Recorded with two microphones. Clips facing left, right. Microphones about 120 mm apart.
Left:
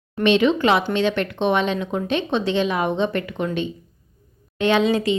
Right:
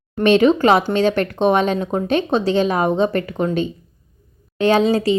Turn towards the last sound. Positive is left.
turn(degrees=-35)  # may be behind; listen again after turning